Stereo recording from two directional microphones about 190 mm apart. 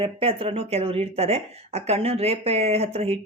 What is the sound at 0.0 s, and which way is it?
Speech, 30° right (ahead or behind).